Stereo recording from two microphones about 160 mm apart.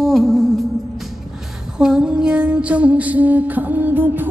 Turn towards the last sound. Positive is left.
turn(degrees=-10)  # may be behind; listen again after turning